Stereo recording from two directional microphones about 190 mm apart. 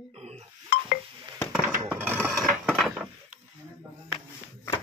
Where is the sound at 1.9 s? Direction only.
10° right (ahead or behind).